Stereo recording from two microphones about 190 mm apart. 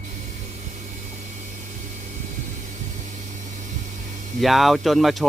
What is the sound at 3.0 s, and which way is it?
Vehicle, 40° right (ahead or behind).